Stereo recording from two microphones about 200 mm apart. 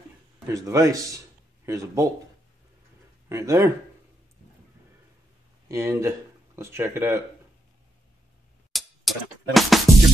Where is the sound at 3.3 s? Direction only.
15° right (ahead or behind).